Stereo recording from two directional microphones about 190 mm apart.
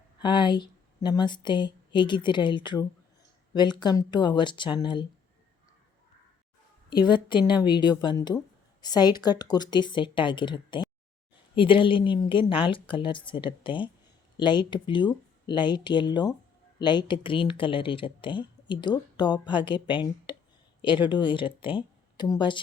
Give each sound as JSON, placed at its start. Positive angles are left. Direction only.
{"t": 0.2, "sound": "a woman's voice", "side_deg": 25}
{"t": 6.9, "sound": "speech", "side_deg": 25}